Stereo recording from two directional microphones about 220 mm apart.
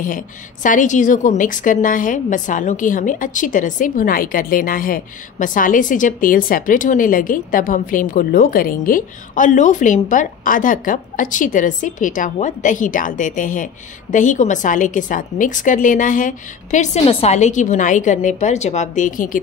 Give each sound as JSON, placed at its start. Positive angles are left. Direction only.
{"t": 0.0, "sound": "a woman's voice", "side_deg": 35}